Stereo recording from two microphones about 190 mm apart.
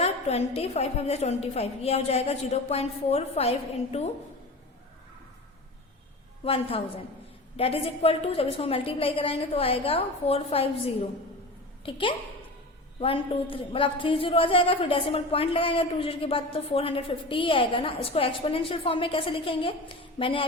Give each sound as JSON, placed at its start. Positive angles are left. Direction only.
{"t": 0.0, "sound": "a woman's voice", "side_deg": 35}
{"t": 6.4, "sound": "a woman's voice", "side_deg": 30}